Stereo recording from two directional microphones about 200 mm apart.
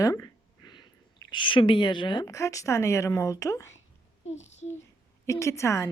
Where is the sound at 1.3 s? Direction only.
25° left (ahead or behind).